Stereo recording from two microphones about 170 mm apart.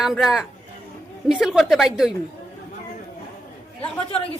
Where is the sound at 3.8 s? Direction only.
35° left (ahead or behind).